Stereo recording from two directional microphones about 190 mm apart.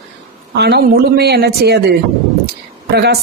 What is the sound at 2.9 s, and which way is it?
Speech, 60° right (ahead or behind).